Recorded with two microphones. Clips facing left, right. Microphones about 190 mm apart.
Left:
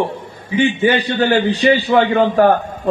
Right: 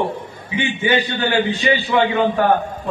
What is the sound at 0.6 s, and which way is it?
A man's voice, 40° left (ahead or behind).